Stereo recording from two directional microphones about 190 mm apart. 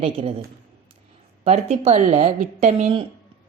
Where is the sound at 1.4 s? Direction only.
35° right (ahead or behind).